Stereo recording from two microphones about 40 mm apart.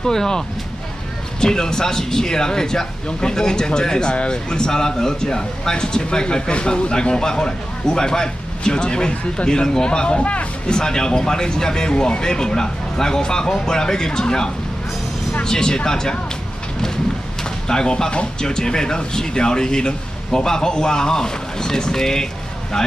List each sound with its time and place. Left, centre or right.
0.0 s speech: centre
1.4 s speech: centre
10.7 s speech: centre
17.4 s speech: centre